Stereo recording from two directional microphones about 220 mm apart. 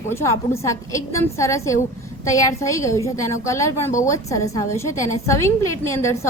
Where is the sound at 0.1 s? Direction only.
10° left (ahead or behind).